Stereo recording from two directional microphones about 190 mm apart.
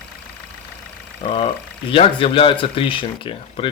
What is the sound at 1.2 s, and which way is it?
Speech, 30° left (ahead or behind).